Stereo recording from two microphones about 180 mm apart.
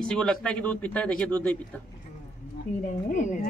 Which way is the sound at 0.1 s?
5° left (ahead or behind).